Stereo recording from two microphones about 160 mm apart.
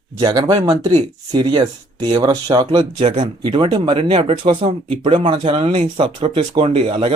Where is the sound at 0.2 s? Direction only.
25° right (ahead or behind).